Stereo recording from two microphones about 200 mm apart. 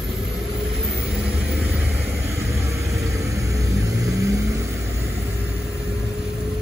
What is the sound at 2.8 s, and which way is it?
Vehicle, 15° right (ahead or behind).